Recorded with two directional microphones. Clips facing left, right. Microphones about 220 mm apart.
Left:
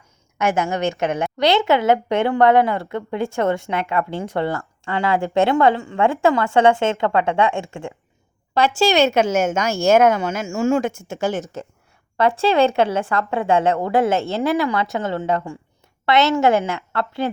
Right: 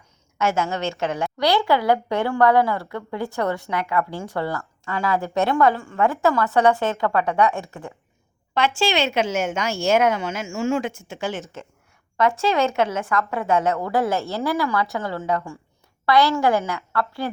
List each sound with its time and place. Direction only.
0.3 s a woman's voice: 15° left (ahead or behind)
8.5 s speech: 40° left (ahead or behind)
12.1 s a woman's voice: 30° left (ahead or behind)